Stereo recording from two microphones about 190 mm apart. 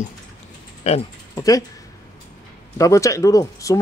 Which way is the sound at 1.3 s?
20° left (ahead or behind).